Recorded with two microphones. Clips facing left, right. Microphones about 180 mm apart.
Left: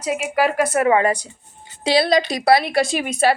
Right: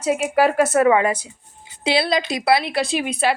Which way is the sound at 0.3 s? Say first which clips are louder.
Right 2 dB; 10° left (ahead or behind).